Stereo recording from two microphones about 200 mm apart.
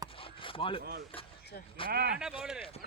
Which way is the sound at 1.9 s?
50° right (ahead or behind).